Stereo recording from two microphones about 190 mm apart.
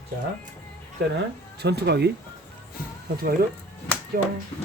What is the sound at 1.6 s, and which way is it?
Speech, 60° right (ahead or behind).